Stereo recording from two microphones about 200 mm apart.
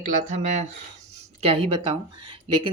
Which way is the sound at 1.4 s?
30° right (ahead or behind).